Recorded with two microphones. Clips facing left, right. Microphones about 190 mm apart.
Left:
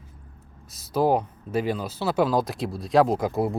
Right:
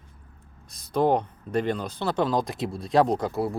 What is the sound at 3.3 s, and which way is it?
Speech, 20° left (ahead or behind).